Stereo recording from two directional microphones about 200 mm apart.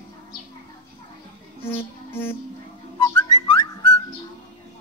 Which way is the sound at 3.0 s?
20° left (ahead or behind).